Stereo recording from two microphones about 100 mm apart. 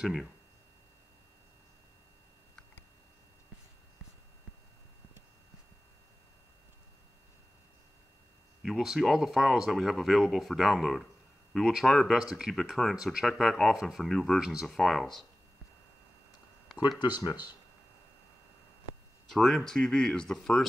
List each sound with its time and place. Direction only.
0.0 s speech: centre (ahead or behind)
8.6 s speech: 5° right (ahead or behind)
17.0 s speech: 45° left (ahead or behind)
19.2 s speech: 5° left (ahead or behind)